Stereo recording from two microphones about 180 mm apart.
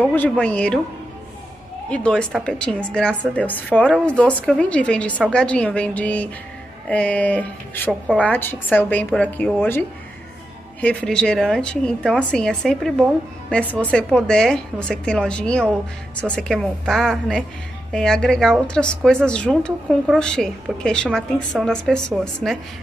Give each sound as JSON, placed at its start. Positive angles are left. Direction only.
{"t": 0.0, "sound": "a woman's voice", "side_deg": 10}
{"t": 1.9, "sound": "a woman's voice", "side_deg": 5}